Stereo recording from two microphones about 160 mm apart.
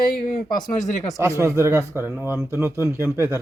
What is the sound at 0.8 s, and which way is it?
Speech, 50° left (ahead or behind).